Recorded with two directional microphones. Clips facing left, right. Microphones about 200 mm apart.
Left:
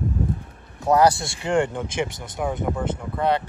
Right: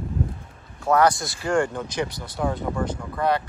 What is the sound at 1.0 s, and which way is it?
Speech, 25° left (ahead or behind).